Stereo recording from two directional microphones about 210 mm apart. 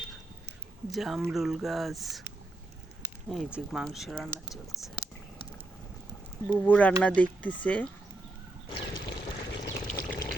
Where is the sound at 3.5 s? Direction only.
Centre (ahead or behind).